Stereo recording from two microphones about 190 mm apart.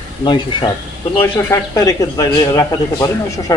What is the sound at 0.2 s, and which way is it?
A man's voice, 25° left (ahead or behind).